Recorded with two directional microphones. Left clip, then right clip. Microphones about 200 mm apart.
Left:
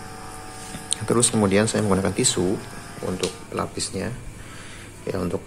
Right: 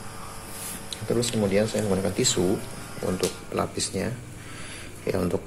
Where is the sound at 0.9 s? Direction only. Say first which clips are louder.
Left 5 dB; 30° left (ahead or behind).